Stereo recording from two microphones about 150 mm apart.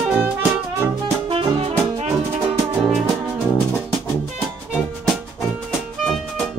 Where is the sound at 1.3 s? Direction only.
40° right (ahead or behind).